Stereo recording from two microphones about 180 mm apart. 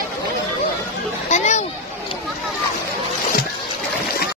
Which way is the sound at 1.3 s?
40° left (ahead or behind).